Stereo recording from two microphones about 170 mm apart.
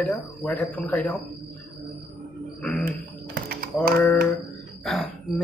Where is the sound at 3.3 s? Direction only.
60° right (ahead or behind).